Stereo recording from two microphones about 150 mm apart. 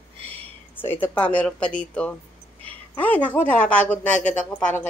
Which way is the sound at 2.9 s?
10° left (ahead or behind).